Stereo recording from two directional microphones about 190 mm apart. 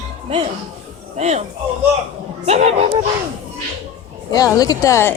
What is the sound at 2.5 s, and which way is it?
Speech, 35° right (ahead or behind).